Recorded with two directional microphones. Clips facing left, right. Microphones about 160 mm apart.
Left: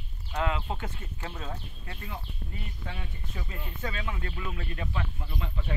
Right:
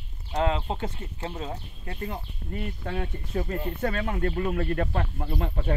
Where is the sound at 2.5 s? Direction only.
55° right (ahead or behind).